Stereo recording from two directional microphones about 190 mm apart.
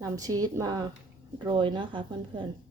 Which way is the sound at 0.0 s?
20° right (ahead or behind).